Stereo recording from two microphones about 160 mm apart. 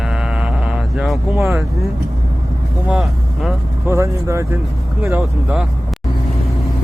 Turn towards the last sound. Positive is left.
turn(degrees=-10)  # may be behind; listen again after turning